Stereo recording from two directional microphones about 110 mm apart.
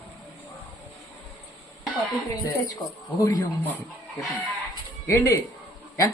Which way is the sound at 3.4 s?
15° left (ahead or behind).